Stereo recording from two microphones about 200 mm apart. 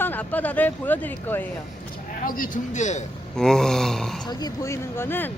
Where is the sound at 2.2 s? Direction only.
45° left (ahead or behind).